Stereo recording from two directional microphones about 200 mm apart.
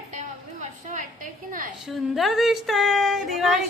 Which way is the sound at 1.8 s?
Centre (ahead or behind).